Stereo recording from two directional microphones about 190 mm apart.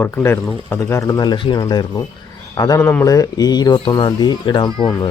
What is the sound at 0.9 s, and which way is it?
Speech, 20° left (ahead or behind).